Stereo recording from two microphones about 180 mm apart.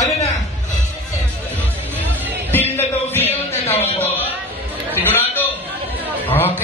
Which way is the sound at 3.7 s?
35° left (ahead or behind).